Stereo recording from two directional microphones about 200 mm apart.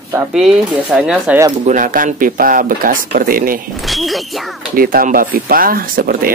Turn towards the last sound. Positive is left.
turn(degrees=-45)  # may be behind; listen again after turning